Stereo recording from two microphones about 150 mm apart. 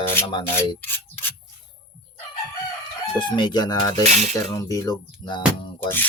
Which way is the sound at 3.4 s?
30° left (ahead or behind).